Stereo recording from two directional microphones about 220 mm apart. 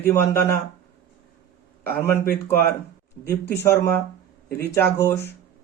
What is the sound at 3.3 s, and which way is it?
A man's voice, 10° left (ahead or behind).